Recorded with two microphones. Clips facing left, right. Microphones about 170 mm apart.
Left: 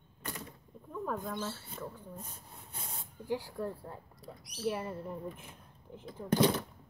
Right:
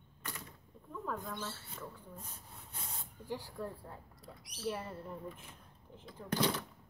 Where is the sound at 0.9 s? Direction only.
25° left (ahead or behind).